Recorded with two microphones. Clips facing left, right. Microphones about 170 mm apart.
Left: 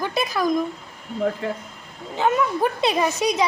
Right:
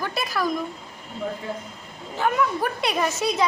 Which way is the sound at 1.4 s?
90° left.